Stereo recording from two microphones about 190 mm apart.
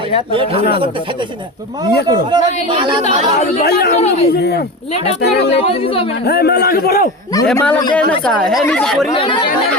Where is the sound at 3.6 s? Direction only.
55° left (ahead or behind).